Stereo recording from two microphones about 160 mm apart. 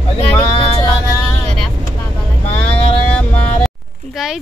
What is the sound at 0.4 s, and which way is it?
Music, 30° left (ahead or behind).